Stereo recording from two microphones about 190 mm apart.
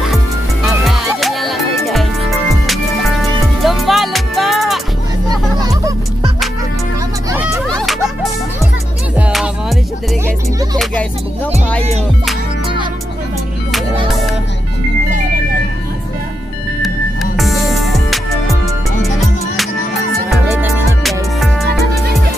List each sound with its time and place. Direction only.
1.2 s music: centre (ahead or behind)
7.2 s music: 15° right (ahead or behind)
7.6 s music: centre (ahead or behind)
9.3 s music: centre (ahead or behind)
10.2 s music: 20° right (ahead or behind)
16.8 s music: centre (ahead or behind)
20.4 s music: 10° right (ahead or behind)